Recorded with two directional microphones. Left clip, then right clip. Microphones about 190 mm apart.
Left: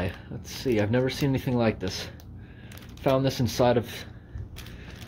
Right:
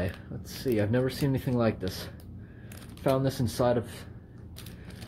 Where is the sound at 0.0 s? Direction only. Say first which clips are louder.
Left 2 dB; 10° left (ahead or behind).